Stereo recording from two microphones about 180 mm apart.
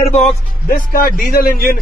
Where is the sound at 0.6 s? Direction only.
55° left (ahead or behind).